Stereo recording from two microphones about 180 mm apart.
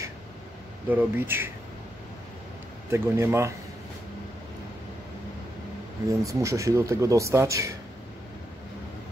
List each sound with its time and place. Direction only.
0.8 s speech: 10° right (ahead or behind)
2.9 s speech: 15° right (ahead or behind)
6.0 s speech: 15° right (ahead or behind)